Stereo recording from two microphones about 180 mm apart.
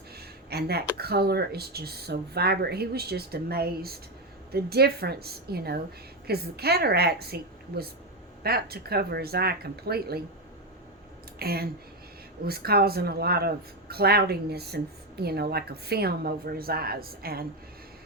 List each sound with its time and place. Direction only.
0.2 s speech: 60° right (ahead or behind)
11.3 s speech: 60° right (ahead or behind)